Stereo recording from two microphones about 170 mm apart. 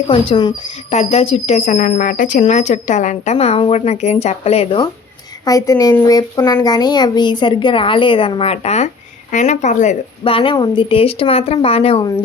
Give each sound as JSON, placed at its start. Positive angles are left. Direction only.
{"t": 0.1, "sound": "speech", "side_deg": 30}
{"t": 0.9, "sound": "speech", "side_deg": 40}
{"t": 5.5, "sound": "a woman's voice", "side_deg": 20}
{"t": 10.3, "sound": "speech", "side_deg": 30}